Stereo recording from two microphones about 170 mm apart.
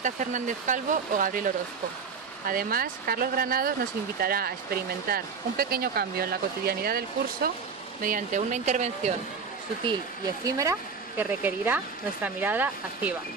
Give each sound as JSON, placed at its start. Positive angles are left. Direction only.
{"t": 0.0, "sound": "speech", "side_deg": -50}
{"t": 8.0, "sound": "speech", "side_deg": -50}
{"t": 10.4, "sound": "speech", "side_deg": -20}